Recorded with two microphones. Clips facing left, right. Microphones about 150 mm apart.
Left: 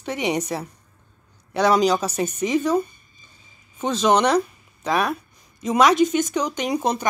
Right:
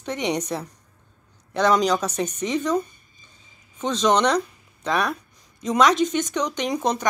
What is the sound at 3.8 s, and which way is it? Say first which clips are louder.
Speech: left 1 dB; 5° left (ahead or behind).